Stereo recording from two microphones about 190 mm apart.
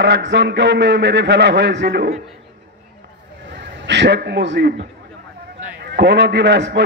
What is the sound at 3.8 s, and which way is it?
A man's voice, 65° right (ahead or behind).